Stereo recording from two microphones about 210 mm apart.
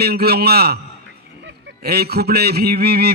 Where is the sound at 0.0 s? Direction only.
50° right (ahead or behind).